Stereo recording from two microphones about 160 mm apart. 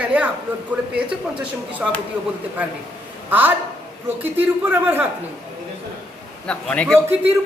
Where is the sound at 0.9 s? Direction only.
5° right (ahead or behind).